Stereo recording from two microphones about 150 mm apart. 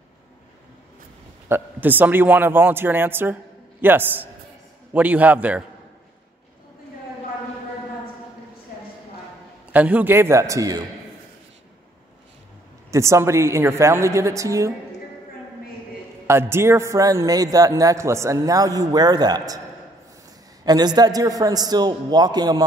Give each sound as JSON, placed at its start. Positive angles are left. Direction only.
{"t": 1.5, "sound": "a man's voice", "side_deg": -10}
{"t": 9.7, "sound": "a man's voice", "side_deg": -10}
{"t": 12.9, "sound": "a man's voice", "side_deg": -20}
{"t": 16.3, "sound": "a man's voice", "side_deg": -15}
{"t": 20.6, "sound": "a man's voice", "side_deg": -25}